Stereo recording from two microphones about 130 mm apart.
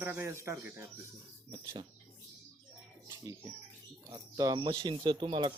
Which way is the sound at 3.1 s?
25° right (ahead or behind).